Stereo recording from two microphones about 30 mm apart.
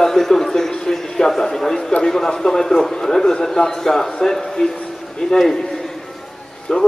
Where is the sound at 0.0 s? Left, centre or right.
Centre.